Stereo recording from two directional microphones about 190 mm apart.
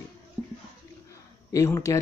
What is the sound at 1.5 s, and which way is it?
Speech, 15° left (ahead or behind).